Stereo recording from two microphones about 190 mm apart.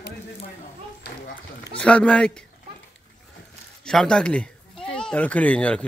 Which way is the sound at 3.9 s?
5° left (ahead or behind).